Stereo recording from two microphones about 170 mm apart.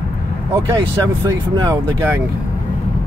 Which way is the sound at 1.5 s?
20° right (ahead or behind).